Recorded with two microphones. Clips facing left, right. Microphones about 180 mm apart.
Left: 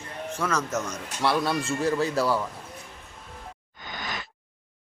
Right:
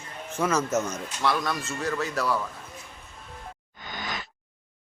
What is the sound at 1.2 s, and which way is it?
Speech, 30° left (ahead or behind).